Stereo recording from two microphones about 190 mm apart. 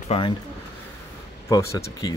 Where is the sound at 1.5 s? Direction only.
15° left (ahead or behind).